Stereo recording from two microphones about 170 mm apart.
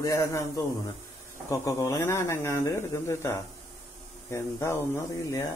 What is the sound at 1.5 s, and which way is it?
A man's voice, 20° left (ahead or behind).